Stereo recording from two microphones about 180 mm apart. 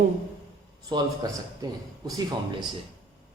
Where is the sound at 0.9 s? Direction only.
20° right (ahead or behind).